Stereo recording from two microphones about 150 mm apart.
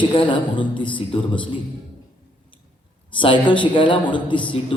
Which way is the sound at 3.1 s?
35° left (ahead or behind).